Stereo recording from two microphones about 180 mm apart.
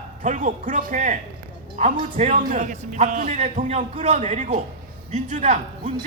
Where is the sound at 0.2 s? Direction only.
45° right (ahead or behind).